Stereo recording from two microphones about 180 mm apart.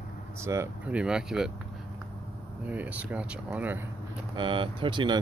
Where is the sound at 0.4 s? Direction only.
15° right (ahead or behind).